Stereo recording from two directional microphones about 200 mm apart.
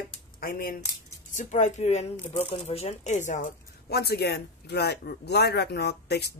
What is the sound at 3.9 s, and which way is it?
Speech, 55° left (ahead or behind).